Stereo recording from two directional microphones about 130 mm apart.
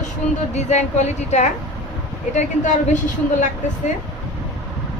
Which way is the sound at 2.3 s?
75° left (ahead or behind).